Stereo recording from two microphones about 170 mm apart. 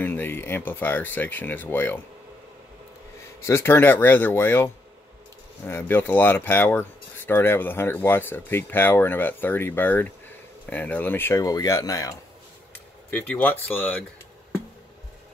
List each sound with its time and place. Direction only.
0.0 s speech: 10° left (ahead or behind)
3.3 s speech: 15° left (ahead or behind)
5.7 s speech: 15° left (ahead or behind)
13.1 s speech: 10° left (ahead or behind)